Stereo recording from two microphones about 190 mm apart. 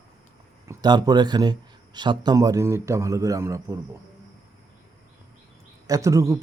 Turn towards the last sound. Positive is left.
turn(degrees=-15)  # may be behind; listen again after turning